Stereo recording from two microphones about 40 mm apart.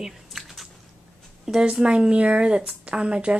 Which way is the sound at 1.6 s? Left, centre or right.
Right.